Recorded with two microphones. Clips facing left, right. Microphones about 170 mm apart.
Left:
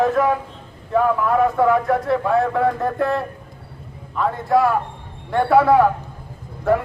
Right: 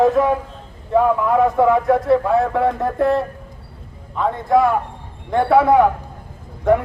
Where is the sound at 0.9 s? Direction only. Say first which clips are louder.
Right 2 dB; 20° right (ahead or behind).